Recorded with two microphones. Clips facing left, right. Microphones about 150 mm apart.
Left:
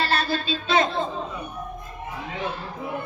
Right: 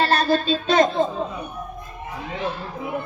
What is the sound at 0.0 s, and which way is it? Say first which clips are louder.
Speech: right 6 dB; 45° right (ahead or behind).